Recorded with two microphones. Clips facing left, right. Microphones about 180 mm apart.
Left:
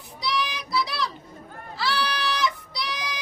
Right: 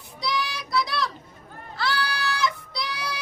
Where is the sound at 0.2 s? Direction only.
Centre (ahead or behind).